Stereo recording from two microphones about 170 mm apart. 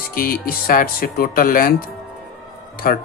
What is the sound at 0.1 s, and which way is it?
Speech, 60° left (ahead or behind).